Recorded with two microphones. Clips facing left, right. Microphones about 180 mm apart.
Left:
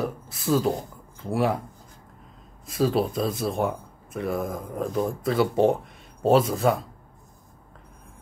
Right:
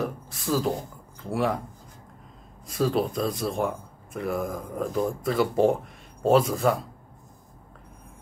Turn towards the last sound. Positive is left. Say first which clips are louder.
# left 1 dB
turn(degrees=0)  # may be behind; listen again after turning